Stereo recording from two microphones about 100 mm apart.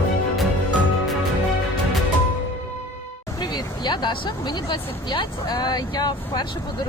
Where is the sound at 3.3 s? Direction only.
45° left (ahead or behind).